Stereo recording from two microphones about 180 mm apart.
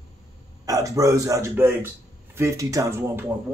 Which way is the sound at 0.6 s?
20° right (ahead or behind).